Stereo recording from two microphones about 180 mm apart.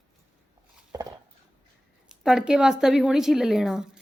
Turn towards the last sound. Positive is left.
turn(degrees=-5)  # may be behind; listen again after turning